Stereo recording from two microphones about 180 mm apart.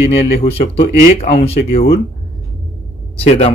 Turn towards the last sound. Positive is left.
turn(degrees=35)  # may be behind; listen again after turning